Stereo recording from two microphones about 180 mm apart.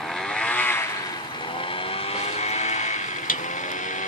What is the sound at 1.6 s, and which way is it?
Vehicle, 30° left (ahead or behind).